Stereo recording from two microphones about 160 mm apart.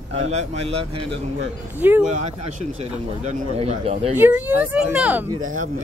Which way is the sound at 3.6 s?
40° right (ahead or behind).